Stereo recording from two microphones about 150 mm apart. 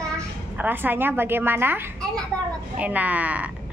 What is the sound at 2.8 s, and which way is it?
Speech, 10° right (ahead or behind).